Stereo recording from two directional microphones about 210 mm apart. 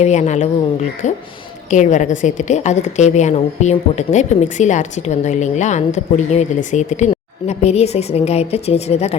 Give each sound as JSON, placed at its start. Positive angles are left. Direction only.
{"t": 0.0, "sound": "a woman's voice", "side_deg": 35}